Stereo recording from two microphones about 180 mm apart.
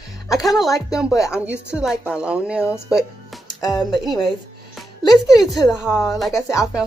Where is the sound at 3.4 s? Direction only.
20° left (ahead or behind).